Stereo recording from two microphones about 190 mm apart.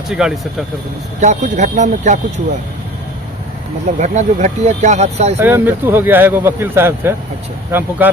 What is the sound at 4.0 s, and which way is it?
Speech, 40° right (ahead or behind).